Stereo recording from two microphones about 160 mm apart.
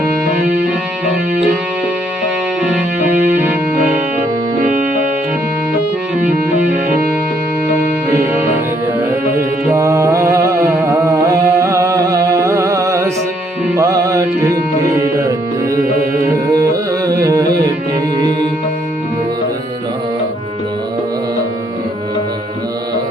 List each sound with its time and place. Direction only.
8.3 s music: 15° right (ahead or behind)
16.2 s carnatic music: 20° right (ahead or behind)